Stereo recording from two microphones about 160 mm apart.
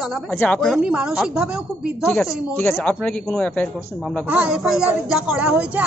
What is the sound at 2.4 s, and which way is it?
Speech, 15° left (ahead or behind).